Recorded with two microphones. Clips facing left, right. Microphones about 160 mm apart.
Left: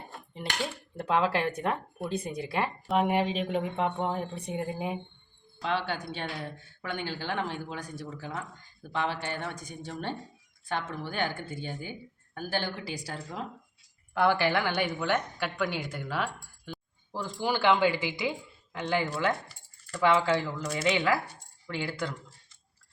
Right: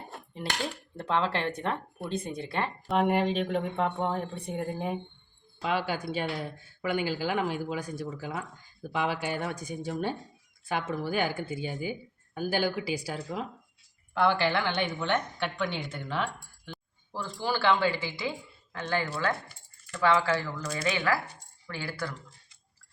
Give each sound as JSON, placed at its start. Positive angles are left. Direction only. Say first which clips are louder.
{"t": 0.3, "sound": "dishes", "louder": "even", "side_deg": 5}
{"t": 2.4, "sound": "speech", "louder": "left 1 dB", "side_deg": 10}
{"t": 5.6, "sound": "speech", "louder": "right 1 dB", "side_deg": -10}
{"t": 14.1, "sound": "a woman's voice", "louder": "even", "side_deg": 10}
{"t": 19.9, "sound": "dishes", "louder": "left 1 dB", "side_deg": 20}
{"t": 20.7, "sound": "speech", "louder": "left 2 dB", "side_deg": 20}